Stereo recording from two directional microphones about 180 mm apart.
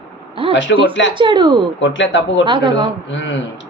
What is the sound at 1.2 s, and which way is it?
Speech, 25° right (ahead or behind).